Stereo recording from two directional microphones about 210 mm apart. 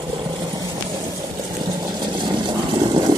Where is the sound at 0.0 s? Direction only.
25° right (ahead or behind).